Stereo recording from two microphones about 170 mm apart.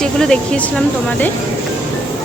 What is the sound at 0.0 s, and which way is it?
Speech, 5° left (ahead or behind).